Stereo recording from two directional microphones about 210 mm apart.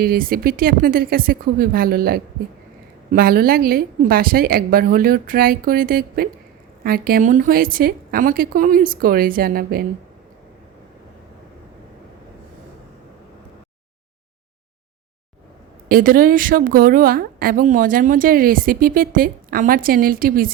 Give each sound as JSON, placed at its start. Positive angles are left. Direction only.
{"t": 0.0, "sound": "a woman's voice", "side_deg": -45}
{"t": 15.9, "sound": "a woman's voice", "side_deg": -45}